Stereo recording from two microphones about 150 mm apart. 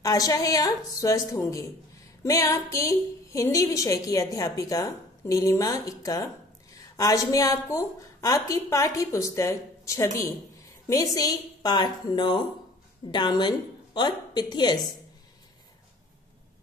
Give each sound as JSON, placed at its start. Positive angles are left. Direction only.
{"t": 0.0, "sound": "a woman's voice", "side_deg": 25}